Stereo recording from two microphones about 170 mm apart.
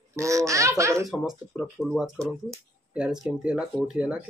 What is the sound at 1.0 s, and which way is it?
Speech, centre (ahead or behind).